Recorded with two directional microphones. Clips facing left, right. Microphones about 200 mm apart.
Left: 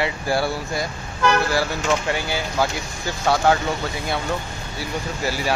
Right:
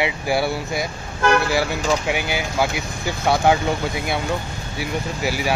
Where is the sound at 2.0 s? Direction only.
15° right (ahead or behind).